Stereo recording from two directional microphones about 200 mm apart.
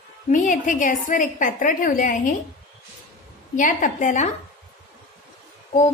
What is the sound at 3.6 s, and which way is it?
Speech, 40° left (ahead or behind).